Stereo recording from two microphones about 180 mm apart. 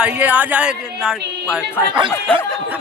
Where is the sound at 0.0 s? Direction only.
10° right (ahead or behind).